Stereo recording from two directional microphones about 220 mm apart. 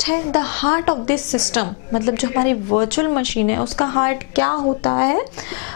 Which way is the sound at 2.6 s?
30° left (ahead or behind).